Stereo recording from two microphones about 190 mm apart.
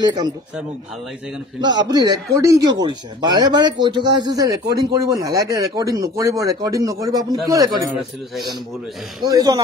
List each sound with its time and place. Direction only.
0.0 s speech: 20° right (ahead or behind)
1.6 s speech: 25° right (ahead or behind)
9.2 s speech: 20° right (ahead or behind)